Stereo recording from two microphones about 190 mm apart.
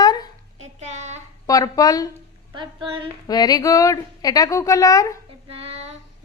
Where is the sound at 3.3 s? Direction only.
20° left (ahead or behind).